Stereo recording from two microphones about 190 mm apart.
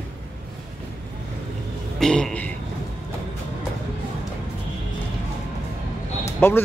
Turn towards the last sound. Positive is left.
turn(degrees=10)  # may be behind; listen again after turning